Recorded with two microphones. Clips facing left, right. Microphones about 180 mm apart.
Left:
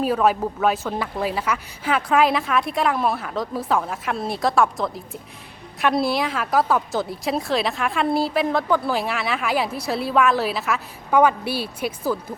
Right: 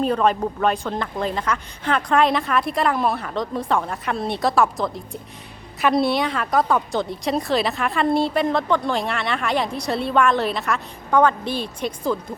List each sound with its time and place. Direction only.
0.0 s a woman's voice: 5° left (ahead or behind)